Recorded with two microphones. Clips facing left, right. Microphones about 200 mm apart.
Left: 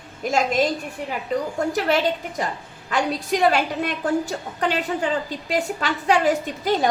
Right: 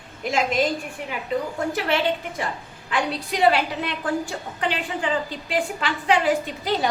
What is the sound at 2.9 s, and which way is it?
A woman's voice, 45° left (ahead or behind).